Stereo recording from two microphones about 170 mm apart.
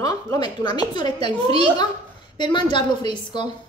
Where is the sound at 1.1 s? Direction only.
40° right (ahead or behind).